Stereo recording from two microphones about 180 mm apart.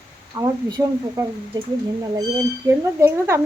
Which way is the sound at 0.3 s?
20° right (ahead or behind).